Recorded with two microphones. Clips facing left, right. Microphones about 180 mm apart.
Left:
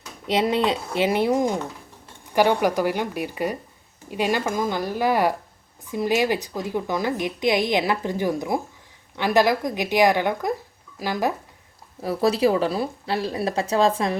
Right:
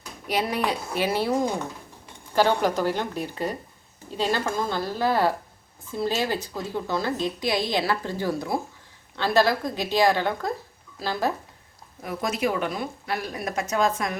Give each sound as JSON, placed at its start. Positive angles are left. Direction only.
{"t": 0.3, "sound": "a woman's voice", "side_deg": 20}
{"t": 12.0, "sound": "speech", "side_deg": 35}